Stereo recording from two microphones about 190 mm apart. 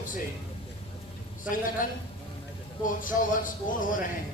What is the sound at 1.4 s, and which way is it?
A man's voice, 45° left (ahead or behind).